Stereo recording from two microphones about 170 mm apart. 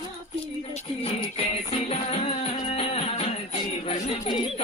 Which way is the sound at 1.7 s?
35° left (ahead or behind).